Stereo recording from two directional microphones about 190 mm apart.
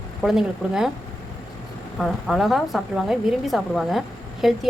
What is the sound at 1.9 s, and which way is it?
A woman's voice, centre (ahead or behind).